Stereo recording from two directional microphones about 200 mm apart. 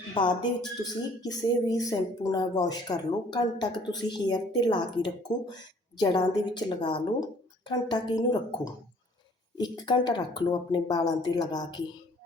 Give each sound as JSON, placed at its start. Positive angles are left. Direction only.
{"t": 0.1, "sound": "a woman's voice", "side_deg": 20}